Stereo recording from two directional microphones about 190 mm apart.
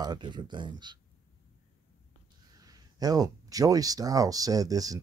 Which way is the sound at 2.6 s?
20° right (ahead or behind).